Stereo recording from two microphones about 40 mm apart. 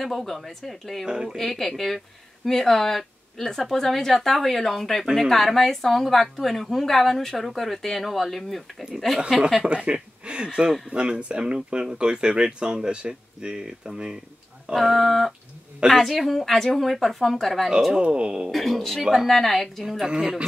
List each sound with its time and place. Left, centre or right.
0.0 s a woman's voice: centre
1.0 s speech: right
1.3 s a woman's voice: centre
9.6 s speech: right
14.7 s a woman's voice: centre
18.0 s speech: right
18.5 s a woman's voice: centre
20.1 s speech: right